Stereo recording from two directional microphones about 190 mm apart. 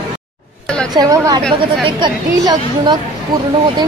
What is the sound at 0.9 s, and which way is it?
A woman's voice, 20° right (ahead or behind).